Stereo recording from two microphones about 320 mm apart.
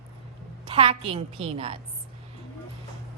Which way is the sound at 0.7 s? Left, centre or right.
Centre.